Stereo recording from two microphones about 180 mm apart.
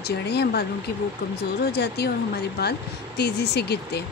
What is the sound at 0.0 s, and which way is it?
Speech, 65° left (ahead or behind).